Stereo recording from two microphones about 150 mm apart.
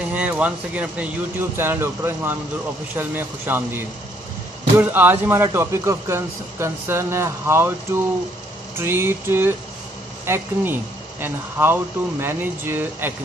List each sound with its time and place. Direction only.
0.1 s speech: 10° right (ahead or behind)